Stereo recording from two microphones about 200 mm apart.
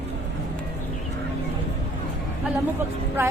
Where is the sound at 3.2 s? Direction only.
10° right (ahead or behind).